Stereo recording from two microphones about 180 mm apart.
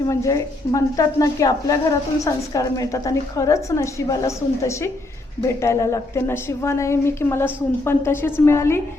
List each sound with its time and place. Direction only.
0.1 s a woman's voice: 15° left (ahead or behind)